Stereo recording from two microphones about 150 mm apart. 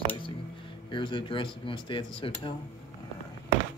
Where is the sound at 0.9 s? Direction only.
35° left (ahead or behind).